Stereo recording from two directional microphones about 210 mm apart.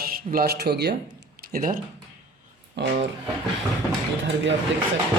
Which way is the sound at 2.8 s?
55° right (ahead or behind).